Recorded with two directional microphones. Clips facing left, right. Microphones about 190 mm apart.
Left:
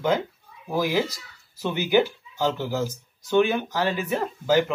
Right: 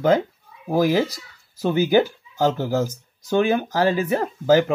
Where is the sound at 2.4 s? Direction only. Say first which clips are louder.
Right 4 dB; 45° right (ahead or behind).